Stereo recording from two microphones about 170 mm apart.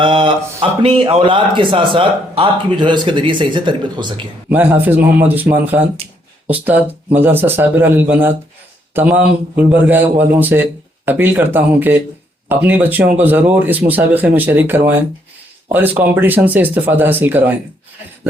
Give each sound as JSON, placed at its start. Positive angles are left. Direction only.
{"t": 0.0, "sound": "a man's voice", "side_deg": -30}
{"t": 4.4, "sound": "a man's voice", "side_deg": -10}